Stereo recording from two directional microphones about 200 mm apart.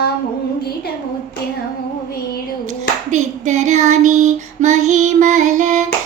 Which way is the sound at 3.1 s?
35° right (ahead or behind).